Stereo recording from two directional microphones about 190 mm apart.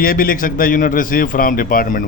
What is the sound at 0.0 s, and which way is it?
A man's voice, 50° left (ahead or behind).